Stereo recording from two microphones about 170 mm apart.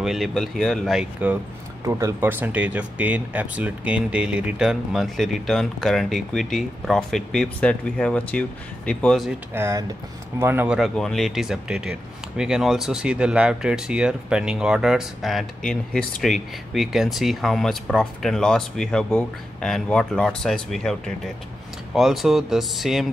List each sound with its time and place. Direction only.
0.0 s speech: centre (ahead or behind)
9.5 s speech: 15° right (ahead or behind)
10.8 s speech: centre (ahead or behind)